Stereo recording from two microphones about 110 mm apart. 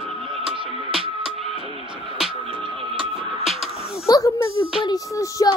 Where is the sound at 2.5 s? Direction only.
55° right (ahead or behind).